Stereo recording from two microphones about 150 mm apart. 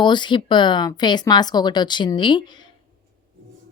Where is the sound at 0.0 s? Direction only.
30° left (ahead or behind).